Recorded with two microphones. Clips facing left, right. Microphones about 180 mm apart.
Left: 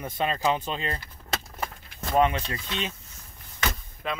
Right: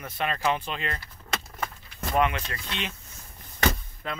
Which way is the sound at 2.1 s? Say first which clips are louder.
Left 3 dB; 20° left (ahead or behind).